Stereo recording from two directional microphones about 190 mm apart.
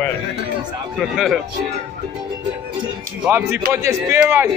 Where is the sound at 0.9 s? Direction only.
Centre (ahead or behind).